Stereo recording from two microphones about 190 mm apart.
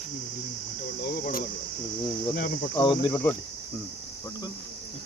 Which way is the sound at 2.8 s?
25° left (ahead or behind).